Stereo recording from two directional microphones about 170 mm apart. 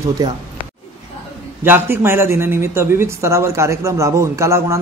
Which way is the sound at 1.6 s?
15° right (ahead or behind).